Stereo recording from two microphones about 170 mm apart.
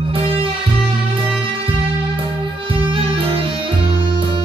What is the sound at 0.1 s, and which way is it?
Music, 30° right (ahead or behind).